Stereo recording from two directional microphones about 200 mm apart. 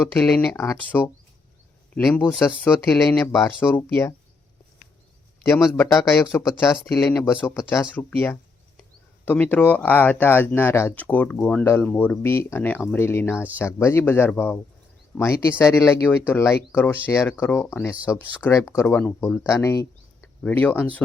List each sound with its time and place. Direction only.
0.1 s speech: 10° left (ahead or behind)
2.0 s speech: 5° left (ahead or behind)
5.5 s speech: centre (ahead or behind)
5.8 s speech: 15° left (ahead or behind)